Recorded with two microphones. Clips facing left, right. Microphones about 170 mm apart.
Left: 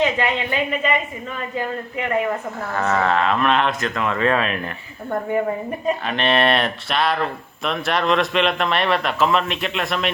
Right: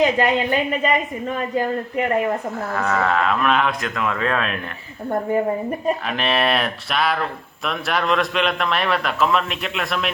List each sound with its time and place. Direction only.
0.0 s speech: 40° right (ahead or behind)
2.7 s a man's voice: centre (ahead or behind)
6.1 s a man's voice: centre (ahead or behind)